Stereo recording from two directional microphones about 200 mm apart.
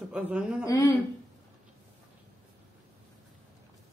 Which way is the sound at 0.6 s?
15° left (ahead or behind).